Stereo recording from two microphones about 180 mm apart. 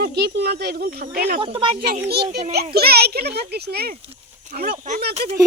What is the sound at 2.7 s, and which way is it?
Speech, 60° right (ahead or behind).